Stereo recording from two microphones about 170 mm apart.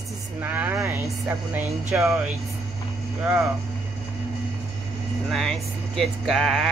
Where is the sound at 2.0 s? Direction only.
Centre (ahead or behind).